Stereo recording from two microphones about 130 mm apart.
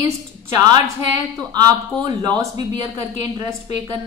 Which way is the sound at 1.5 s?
30° right (ahead or behind).